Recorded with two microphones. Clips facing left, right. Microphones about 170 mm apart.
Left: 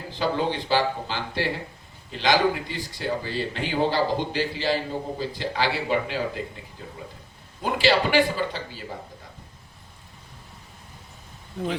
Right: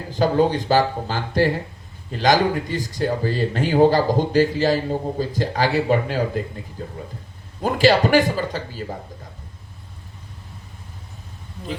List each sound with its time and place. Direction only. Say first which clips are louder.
0.1 s speech: right 7 dB; 45° right (ahead or behind)
11.6 s speech: left 5 dB; 85° left